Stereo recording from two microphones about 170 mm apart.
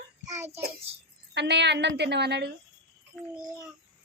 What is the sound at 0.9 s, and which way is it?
Speech, 35° right (ahead or behind).